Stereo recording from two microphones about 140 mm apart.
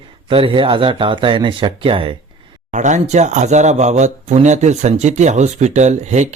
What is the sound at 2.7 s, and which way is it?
Speech, 60° right (ahead or behind).